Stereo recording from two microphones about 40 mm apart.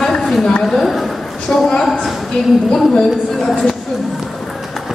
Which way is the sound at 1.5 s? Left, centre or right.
Left.